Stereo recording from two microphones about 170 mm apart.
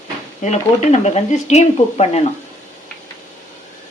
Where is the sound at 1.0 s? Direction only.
40° left (ahead or behind).